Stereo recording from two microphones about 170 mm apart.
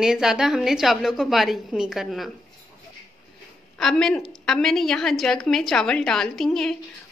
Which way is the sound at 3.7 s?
5° left (ahead or behind).